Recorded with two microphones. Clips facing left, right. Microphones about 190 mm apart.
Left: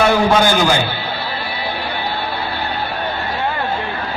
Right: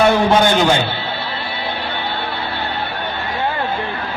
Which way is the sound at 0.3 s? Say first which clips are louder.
Right 1 dB; 25° right (ahead or behind).